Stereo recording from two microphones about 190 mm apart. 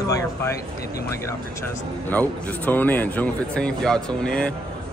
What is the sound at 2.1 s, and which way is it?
Speech, 10° left (ahead or behind).